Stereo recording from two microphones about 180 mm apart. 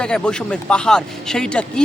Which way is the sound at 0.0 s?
5° left (ahead or behind).